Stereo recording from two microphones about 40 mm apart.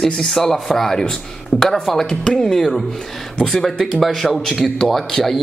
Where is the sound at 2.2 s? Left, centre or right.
Centre.